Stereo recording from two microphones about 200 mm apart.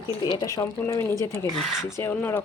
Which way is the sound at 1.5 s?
Centre (ahead or behind).